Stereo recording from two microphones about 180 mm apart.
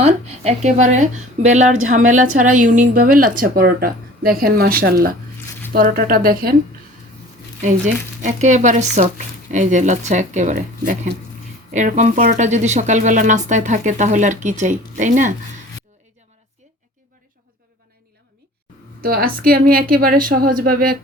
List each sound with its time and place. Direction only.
0.0 s a woman's voice: 40° right (ahead or behind); by 6.6 s 55° right (ahead or behind)
7.6 s a woman's voice: 45° right (ahead or behind)
19.0 s a woman's voice: 55° right (ahead or behind)